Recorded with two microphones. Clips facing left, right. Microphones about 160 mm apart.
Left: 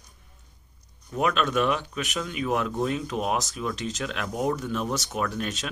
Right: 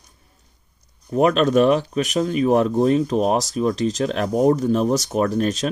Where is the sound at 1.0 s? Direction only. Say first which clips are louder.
Right 8 dB; 35° right (ahead or behind).